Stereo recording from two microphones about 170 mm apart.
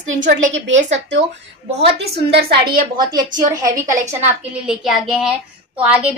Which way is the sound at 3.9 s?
45° right (ahead or behind).